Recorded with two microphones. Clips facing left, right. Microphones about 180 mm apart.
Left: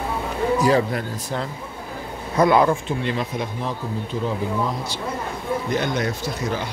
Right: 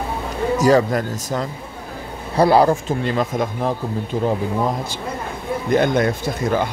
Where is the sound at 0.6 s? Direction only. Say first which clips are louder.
Right 6 dB; 40° right (ahead or behind).